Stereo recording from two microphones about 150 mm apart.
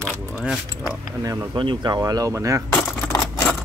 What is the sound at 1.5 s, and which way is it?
Speech, 35° right (ahead or behind).